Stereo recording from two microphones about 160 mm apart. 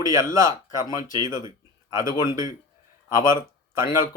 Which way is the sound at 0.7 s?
25° left (ahead or behind).